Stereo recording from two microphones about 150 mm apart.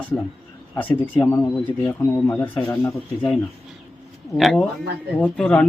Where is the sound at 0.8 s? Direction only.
10° left (ahead or behind).